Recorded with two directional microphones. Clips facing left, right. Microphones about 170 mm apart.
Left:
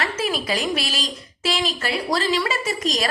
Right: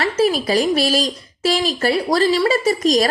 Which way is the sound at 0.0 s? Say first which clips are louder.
Right 8 dB; 35° right (ahead or behind).